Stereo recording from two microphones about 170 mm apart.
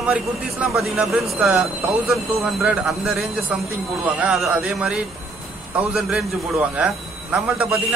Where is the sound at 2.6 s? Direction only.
5° right (ahead or behind).